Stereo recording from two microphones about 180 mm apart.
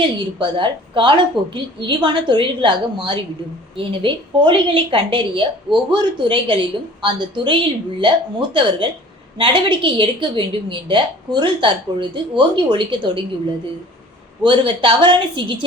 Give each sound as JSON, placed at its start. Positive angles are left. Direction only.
{"t": 0.0, "sound": "a woman's voice", "side_deg": -25}
{"t": 14.4, "sound": "a woman's voice", "side_deg": -30}